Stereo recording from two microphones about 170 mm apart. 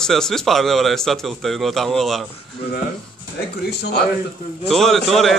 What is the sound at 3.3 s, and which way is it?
Speech, 75° left (ahead or behind).